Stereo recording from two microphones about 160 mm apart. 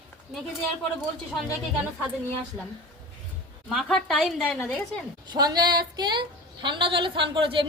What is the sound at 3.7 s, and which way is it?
A woman's voice, centre (ahead or behind).